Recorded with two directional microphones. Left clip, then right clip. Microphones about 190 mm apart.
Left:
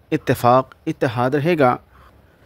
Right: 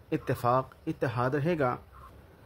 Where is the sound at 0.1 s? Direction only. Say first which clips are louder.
Left 12 dB; 40° left (ahead or behind).